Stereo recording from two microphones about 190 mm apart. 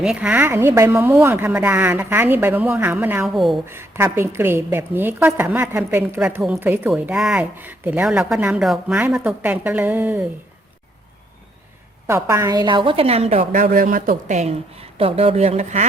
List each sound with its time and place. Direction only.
0.0 s a woman's voice: 5° right (ahead or behind)
3.7 s a woman's voice: 10° right (ahead or behind)
12.0 s a woman's voice: 15° right (ahead or behind); by 15.9 s 35° right (ahead or behind)